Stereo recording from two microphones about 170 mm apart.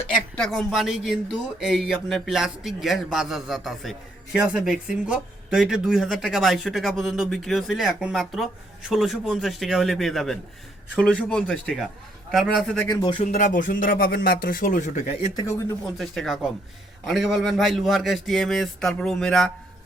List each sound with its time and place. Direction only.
0.3 s speech: centre (ahead or behind)
12.9 s speech: 25° left (ahead or behind)
13.3 s speech: 50° left (ahead or behind)
15.4 s speech: 15° left (ahead or behind)
16.0 s speech: centre (ahead or behind)